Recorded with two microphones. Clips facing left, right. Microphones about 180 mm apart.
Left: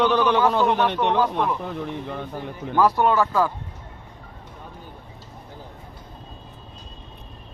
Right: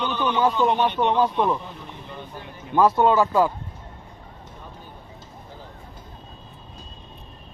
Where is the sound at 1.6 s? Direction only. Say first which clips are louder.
Left 10 dB; 60° left (ahead or behind).